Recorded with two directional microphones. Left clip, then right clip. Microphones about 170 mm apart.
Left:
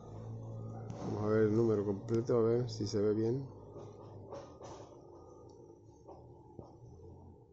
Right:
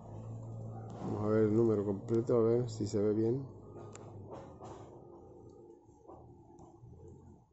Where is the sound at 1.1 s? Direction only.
10° right (ahead or behind).